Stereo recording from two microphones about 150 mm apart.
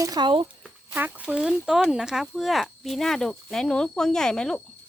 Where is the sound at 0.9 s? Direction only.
10° right (ahead or behind); by 4.6 s 5° left (ahead or behind).